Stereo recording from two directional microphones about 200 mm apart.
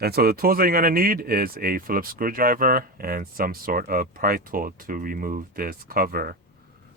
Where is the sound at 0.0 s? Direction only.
50° right (ahead or behind).